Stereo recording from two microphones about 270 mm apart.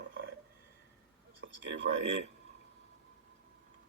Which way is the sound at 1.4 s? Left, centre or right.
Right.